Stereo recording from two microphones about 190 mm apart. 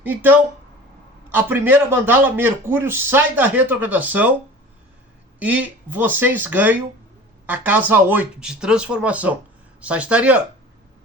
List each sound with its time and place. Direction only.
0.0 s a man's voice: 10° right (ahead or behind)
5.4 s a man's voice: 10° right (ahead or behind)